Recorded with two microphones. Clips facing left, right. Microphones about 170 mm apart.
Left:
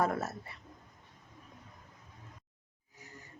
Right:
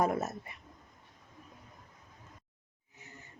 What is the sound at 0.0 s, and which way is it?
Speech, 20° right (ahead or behind).